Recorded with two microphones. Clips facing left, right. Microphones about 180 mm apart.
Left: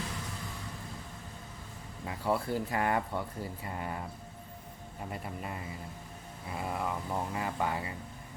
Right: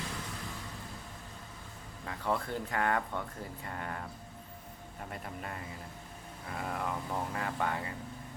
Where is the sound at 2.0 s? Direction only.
5° left (ahead or behind).